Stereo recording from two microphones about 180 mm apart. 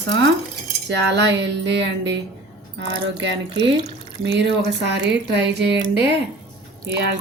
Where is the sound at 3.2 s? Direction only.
85° right.